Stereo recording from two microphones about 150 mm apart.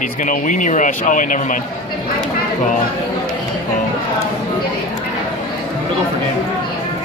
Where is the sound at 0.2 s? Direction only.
55° left (ahead or behind).